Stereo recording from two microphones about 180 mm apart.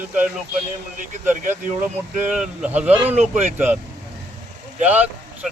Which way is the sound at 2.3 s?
5° right (ahead or behind).